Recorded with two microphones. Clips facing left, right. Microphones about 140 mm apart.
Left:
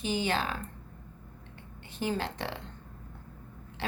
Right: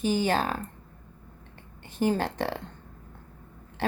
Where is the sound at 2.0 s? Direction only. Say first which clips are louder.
Right 6 dB; 45° right (ahead or behind).